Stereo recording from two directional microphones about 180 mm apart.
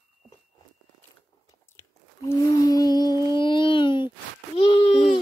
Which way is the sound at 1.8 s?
15° left (ahead or behind).